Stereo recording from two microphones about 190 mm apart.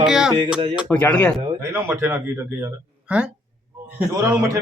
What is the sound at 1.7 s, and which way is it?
A man's voice, 15° right (ahead or behind).